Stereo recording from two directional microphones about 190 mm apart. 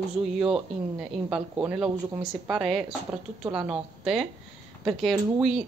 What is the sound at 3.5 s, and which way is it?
Speech, 25° right (ahead or behind).